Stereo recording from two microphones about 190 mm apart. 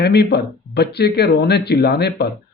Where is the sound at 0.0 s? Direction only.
60° left (ahead or behind).